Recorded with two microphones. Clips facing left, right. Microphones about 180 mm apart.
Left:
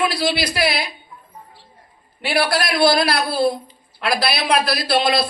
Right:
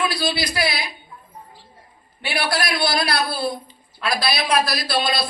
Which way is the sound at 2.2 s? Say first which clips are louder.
Left 4 dB; 30° left (ahead or behind).